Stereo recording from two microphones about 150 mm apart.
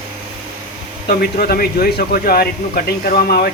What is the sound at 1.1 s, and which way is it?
Speech, 90° left.